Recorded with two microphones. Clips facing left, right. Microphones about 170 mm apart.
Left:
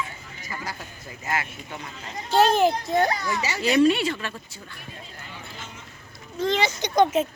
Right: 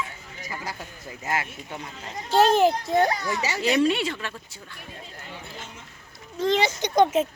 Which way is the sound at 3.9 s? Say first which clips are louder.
Left 3 dB; 20° right (ahead or behind).